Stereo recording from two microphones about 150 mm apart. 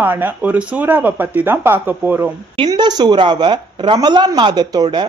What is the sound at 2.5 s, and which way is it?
Speech, 30° right (ahead or behind).